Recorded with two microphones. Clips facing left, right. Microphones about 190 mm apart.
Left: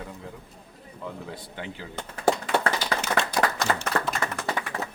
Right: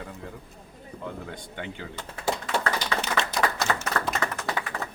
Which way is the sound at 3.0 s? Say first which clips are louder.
Left 2 dB; 50° left (ahead or behind).